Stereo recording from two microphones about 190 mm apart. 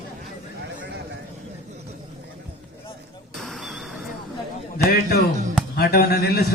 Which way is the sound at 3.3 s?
Centre (ahead or behind).